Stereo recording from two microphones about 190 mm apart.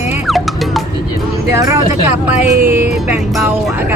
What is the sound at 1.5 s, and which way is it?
Speech, 15° right (ahead or behind).